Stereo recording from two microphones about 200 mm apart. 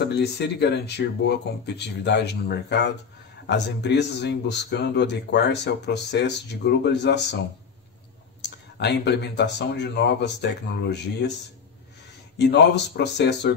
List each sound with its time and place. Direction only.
0.0 s speech: 55° left (ahead or behind)
12.4 s speech: 60° left (ahead or behind)